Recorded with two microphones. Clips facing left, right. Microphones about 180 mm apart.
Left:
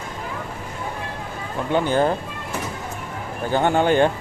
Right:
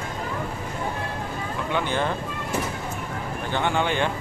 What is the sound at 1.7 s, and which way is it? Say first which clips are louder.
Speech: left 7 dB; 40° left (ahead or behind).